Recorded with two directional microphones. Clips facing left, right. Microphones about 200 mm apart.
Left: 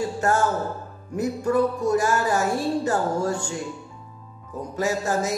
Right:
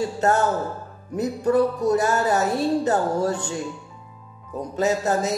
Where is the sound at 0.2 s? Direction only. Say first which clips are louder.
Right 2 dB; 20° right (ahead or behind).